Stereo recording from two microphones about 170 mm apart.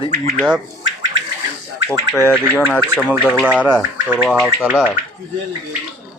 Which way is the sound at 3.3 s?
10° right (ahead or behind).